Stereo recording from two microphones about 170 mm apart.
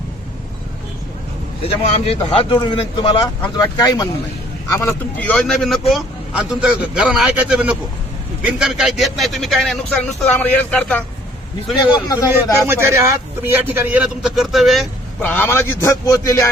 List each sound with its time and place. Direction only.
1.6 s a man's voice: 35° left (ahead or behind); by 11.0 s 5° left (ahead or behind)
12.0 s a man's voice: 20° left (ahead or behind)
12.5 s a man's voice: 15° right (ahead or behind)
15.2 s a man's voice: 10° left (ahead or behind)